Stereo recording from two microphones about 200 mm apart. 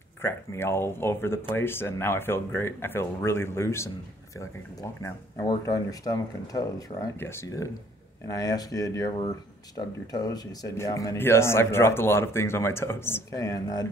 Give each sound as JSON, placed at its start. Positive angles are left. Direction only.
{"t": 0.2, "sound": "speech", "side_deg": 10}